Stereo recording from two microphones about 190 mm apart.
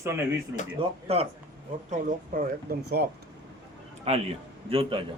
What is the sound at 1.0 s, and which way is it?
Speech, 30° right (ahead or behind).